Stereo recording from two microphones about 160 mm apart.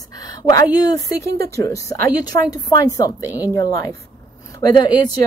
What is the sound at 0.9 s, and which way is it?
A woman's voice, 20° left (ahead or behind).